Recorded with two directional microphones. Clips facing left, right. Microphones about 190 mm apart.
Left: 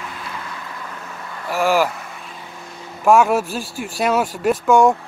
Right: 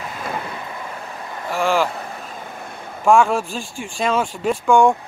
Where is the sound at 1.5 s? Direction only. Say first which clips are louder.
Left 2 dB; 5° left (ahead or behind).